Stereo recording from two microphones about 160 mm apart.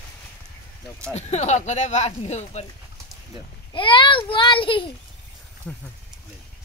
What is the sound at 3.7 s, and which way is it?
A child's voice, 30° left (ahead or behind).